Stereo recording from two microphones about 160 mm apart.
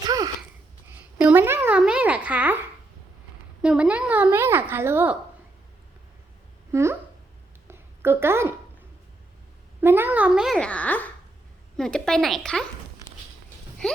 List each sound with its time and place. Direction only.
0.0 s a sound: 25° right (ahead or behind)
0.9 s a woman's voice: 10° right (ahead or behind)
6.7 s speech: 15° right (ahead or behind)
7.7 s a sound: 15° right (ahead or behind)
9.8 s a child's voice: 15° right (ahead or behind); by 12.6 s 5° left (ahead or behind)
13.8 s speech: 5° left (ahead or behind)